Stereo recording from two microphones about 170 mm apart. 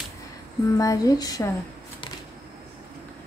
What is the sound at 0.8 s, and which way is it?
Speech, 20° left (ahead or behind).